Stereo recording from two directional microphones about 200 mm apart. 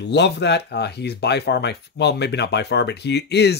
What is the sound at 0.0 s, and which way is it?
Speech, 60° left (ahead or behind).